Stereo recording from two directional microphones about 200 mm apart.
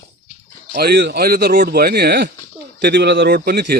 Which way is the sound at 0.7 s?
50° right (ahead or behind).